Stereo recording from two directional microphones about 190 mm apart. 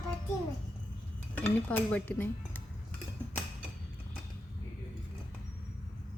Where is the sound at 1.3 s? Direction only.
10° left (ahead or behind).